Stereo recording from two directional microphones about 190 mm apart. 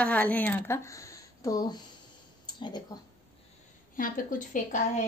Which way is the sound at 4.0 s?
45° left (ahead or behind).